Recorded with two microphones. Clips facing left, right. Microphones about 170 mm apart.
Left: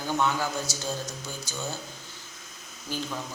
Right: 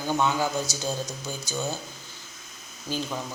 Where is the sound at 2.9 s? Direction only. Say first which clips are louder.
Right 3 dB; 15° right (ahead or behind).